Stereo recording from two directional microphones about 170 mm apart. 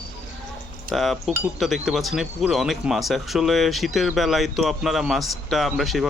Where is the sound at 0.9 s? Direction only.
Centre (ahead or behind).